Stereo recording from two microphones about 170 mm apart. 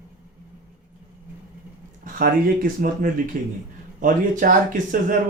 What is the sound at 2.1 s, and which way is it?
Speech, 55° right (ahead or behind).